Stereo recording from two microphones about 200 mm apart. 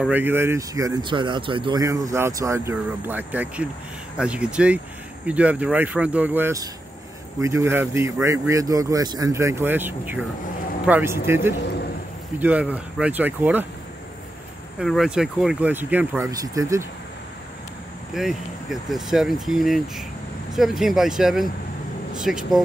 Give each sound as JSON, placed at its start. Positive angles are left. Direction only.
{"t": 0.0, "sound": "speech", "side_deg": -10}
{"t": 14.8, "sound": "speech", "side_deg": 0}
{"t": 18.1, "sound": "speech", "side_deg": 0}